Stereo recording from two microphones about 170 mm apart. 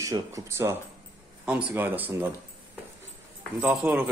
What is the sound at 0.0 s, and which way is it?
A man's voice, 20° right (ahead or behind).